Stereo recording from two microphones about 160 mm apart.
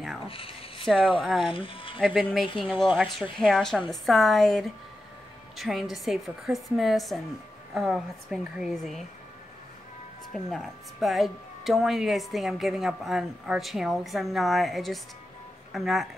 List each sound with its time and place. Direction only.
0.3 s a sound: 35° left (ahead or behind)
0.8 s a woman's voice: 5° right (ahead or behind)
1.5 s speech: 35° left (ahead or behind)
2.0 s a woman's voice: 5° right (ahead or behind)
2.7 s speech: 35° left (ahead or behind)
3.1 s a woman's voice: centre (ahead or behind)
10.3 s a woman's voice: centre (ahead or behind)